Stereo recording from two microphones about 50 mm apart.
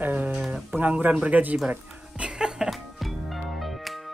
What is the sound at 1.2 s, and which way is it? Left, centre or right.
Speech, right.